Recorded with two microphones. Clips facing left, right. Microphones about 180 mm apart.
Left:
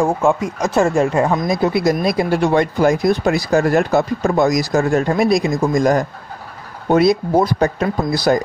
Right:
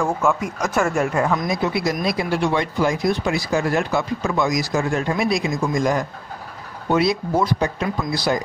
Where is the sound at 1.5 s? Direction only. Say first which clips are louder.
Left 6 dB; 40° left (ahead or behind).